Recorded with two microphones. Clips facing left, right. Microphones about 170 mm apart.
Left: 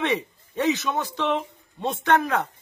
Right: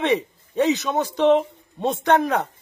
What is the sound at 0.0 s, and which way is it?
A man's voice, 20° right (ahead or behind).